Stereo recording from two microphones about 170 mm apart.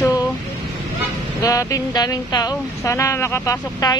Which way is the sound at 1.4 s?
20° left (ahead or behind).